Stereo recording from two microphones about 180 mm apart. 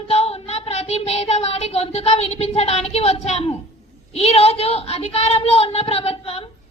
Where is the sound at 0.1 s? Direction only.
35° left (ahead or behind).